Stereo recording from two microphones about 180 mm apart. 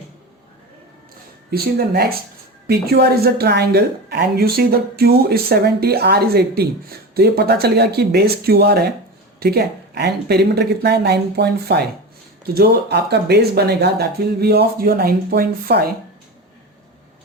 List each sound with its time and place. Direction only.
1.5 s a woman's voice: 60° right (ahead or behind)